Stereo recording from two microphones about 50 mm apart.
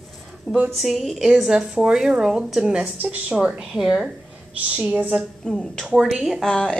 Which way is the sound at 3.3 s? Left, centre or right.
Centre.